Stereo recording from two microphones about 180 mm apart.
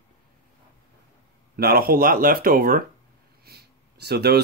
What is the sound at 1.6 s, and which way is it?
Speech, 55° right (ahead or behind).